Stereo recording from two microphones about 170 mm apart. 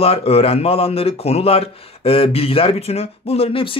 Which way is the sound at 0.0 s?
35° left (ahead or behind).